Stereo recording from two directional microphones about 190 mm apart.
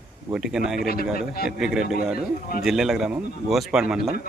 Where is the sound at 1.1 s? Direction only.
50° left (ahead or behind).